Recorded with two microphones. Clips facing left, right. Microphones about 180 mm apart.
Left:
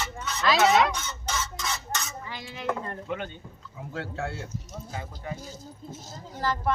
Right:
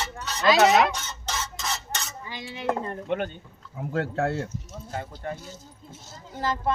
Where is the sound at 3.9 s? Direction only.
55° right (ahead or behind).